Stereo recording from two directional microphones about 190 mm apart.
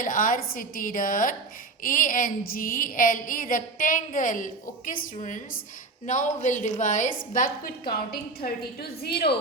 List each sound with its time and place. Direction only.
0.0 s a woman's voice: 45° left (ahead or behind)